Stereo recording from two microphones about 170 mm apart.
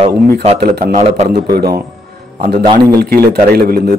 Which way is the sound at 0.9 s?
40° right (ahead or behind).